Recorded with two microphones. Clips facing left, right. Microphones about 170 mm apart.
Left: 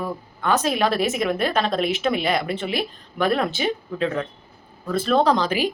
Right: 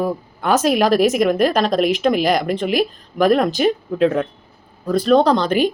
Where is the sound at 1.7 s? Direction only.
Centre (ahead or behind).